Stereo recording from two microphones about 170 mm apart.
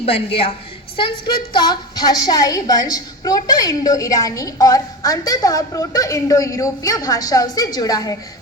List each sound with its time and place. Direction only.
0.0 s a woman's voice: 35° left (ahead or behind)